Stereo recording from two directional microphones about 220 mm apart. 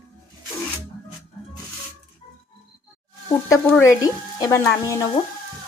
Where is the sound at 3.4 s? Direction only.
10° left (ahead or behind).